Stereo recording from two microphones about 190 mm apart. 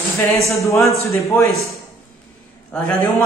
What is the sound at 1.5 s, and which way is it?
A man's voice, centre (ahead or behind).